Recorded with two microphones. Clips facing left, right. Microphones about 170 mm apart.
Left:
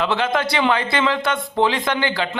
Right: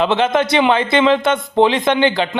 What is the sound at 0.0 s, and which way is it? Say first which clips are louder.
A man's voice: right 5 dB; 20° right (ahead or behind).